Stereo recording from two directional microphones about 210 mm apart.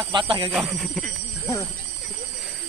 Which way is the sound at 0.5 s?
5° right (ahead or behind).